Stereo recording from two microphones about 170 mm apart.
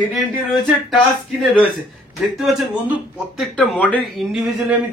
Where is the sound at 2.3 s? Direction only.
Centre (ahead or behind).